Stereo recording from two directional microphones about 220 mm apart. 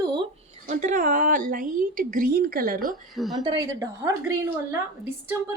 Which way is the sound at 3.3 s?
20° right (ahead or behind).